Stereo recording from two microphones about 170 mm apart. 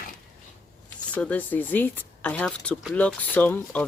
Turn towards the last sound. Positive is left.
turn(degrees=10)  # may be behind; listen again after turning